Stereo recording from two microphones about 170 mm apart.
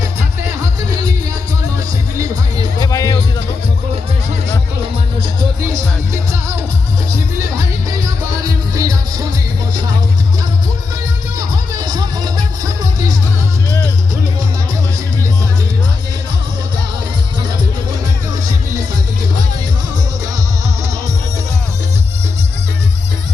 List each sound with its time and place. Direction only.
2.1 s music: 20° right (ahead or behind)
2.8 s music: 20° left (ahead or behind)
5.4 s music: 20° right (ahead or behind)
7.1 s music: 20° right (ahead or behind)
11.3 s music: 25° right (ahead or behind)